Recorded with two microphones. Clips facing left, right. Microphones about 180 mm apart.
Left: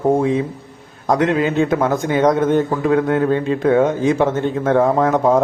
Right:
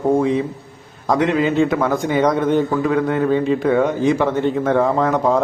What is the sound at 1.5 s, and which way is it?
Speech, 20° left (ahead or behind).